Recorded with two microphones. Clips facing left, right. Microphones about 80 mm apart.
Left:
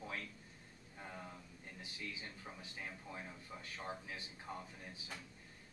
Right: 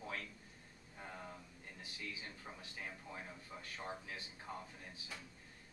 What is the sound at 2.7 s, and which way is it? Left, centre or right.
A man's voice, centre.